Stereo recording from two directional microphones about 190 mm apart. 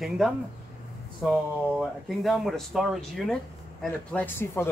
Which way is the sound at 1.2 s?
Centre (ahead or behind).